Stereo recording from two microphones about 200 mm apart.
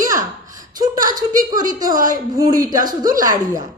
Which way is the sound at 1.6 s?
20° right (ahead or behind).